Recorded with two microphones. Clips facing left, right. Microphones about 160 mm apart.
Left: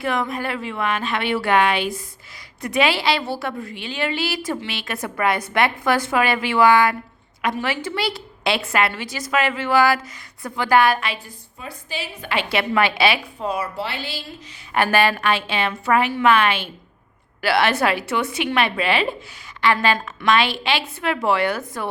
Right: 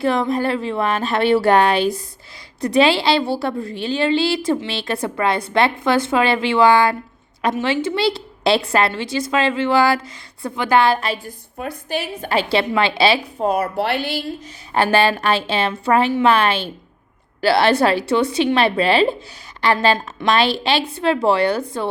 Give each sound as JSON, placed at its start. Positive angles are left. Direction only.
{"t": 0.0, "sound": "a woman's voice", "side_deg": -30}
{"t": 11.5, "sound": "a woman's voice", "side_deg": -60}
{"t": 13.4, "sound": "speech", "side_deg": -55}
{"t": 14.7, "sound": "a woman's voice", "side_deg": -30}